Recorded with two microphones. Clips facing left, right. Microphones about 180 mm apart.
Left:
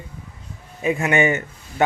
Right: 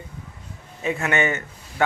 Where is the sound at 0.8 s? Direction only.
15° left (ahead or behind).